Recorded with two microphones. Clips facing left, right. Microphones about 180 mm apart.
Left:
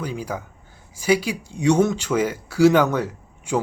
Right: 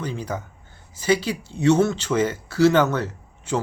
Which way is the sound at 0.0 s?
10° left (ahead or behind).